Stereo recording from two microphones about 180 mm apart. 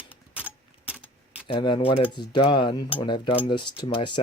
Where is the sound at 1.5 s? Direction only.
25° left (ahead or behind).